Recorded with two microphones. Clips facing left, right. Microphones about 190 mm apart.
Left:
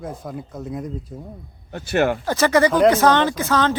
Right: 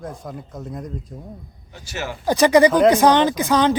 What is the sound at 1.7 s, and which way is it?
Speech, 60° left (ahead or behind).